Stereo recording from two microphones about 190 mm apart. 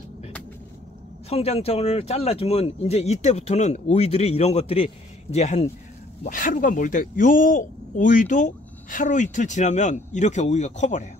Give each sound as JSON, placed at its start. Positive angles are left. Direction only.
{"t": 1.3, "sound": "a man's voice", "side_deg": 30}
{"t": 6.2, "sound": "a man's voice", "side_deg": 45}